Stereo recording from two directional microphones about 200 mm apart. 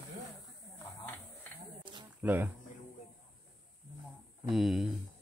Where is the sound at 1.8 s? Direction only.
25° right (ahead or behind).